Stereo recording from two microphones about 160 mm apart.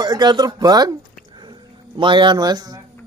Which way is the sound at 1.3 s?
30° right (ahead or behind).